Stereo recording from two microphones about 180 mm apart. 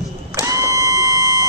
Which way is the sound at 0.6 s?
20° right (ahead or behind).